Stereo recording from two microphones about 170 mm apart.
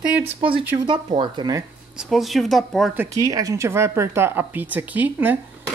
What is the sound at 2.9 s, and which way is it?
Speech, 20° right (ahead or behind).